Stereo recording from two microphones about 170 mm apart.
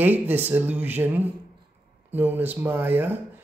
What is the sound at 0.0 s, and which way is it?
Speech, 10° right (ahead or behind).